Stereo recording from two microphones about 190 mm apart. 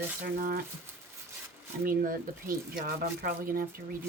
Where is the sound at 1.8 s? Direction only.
45° right (ahead or behind).